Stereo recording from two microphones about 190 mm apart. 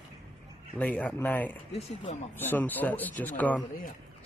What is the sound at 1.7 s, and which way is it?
Speech, 35° left (ahead or behind).